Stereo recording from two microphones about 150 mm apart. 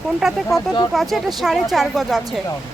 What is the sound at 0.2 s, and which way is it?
Speech, 5° right (ahead or behind).